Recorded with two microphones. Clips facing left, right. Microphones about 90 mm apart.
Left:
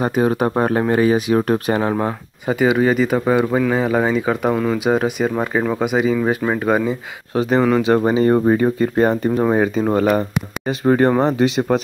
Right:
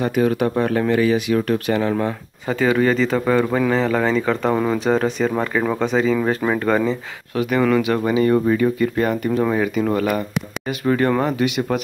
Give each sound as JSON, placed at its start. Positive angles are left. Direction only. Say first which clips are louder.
{"t": 0.0, "sound": "speech", "louder": "left 1 dB", "side_deg": 30}
{"t": 2.0, "sound": "speech", "louder": "left 2 dB", "side_deg": 15}
{"t": 7.3, "sound": "speech", "louder": "left 2 dB", "side_deg": 30}